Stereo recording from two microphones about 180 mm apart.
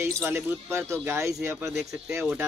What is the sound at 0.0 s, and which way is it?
Speech, 15° right (ahead or behind).